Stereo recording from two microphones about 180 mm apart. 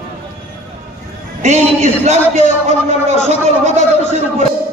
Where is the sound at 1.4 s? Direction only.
40° right (ahead or behind).